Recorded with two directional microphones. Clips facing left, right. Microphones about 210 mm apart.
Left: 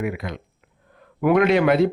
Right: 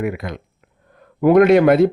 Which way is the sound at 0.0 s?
50° right (ahead or behind).